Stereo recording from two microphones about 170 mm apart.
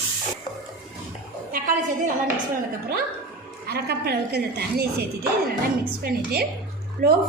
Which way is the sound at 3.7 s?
75° right (ahead or behind).